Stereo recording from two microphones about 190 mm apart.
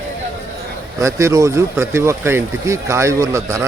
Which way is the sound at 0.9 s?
15° right (ahead or behind).